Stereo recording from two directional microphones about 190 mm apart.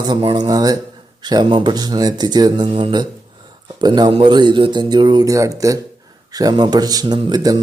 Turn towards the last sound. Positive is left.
turn(degrees=-20)  # may be behind; listen again after turning